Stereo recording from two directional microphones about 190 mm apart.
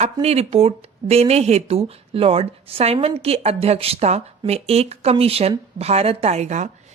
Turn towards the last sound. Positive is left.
turn(degrees=-40)  # may be behind; listen again after turning